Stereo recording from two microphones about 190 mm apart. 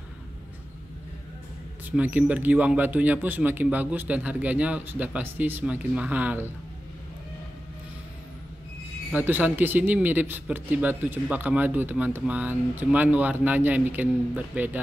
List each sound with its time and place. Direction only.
1.9 s speech: 10° right (ahead or behind)
9.1 s speech: 10° right (ahead or behind)